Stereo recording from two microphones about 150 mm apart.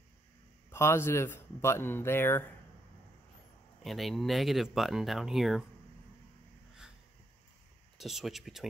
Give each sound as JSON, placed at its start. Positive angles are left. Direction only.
{"t": 0.7, "sound": "speech", "side_deg": 15}
{"t": 3.8, "sound": "speech", "side_deg": 0}
{"t": 8.0, "sound": "speech", "side_deg": 0}